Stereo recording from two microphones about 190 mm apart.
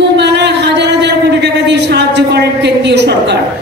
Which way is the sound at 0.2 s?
65° right (ahead or behind).